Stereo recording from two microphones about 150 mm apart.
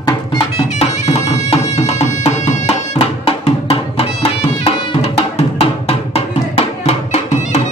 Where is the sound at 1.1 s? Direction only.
45° left (ahead or behind).